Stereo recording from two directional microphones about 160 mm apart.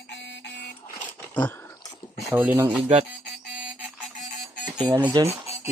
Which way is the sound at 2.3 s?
10° right (ahead or behind).